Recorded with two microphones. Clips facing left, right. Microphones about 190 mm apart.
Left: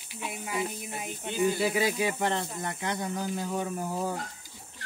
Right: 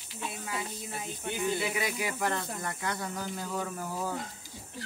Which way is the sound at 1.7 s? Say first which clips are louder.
Left 5 dB; 25° left (ahead or behind).